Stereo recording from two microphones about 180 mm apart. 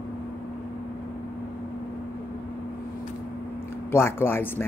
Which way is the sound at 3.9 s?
15° left (ahead or behind).